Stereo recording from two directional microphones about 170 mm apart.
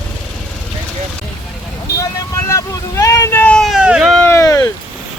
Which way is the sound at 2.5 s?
20° left (ahead or behind).